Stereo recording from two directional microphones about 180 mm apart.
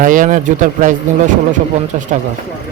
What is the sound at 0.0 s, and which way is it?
Speech, 50° right (ahead or behind).